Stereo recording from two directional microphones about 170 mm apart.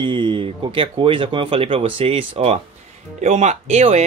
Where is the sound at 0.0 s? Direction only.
30° right (ahead or behind).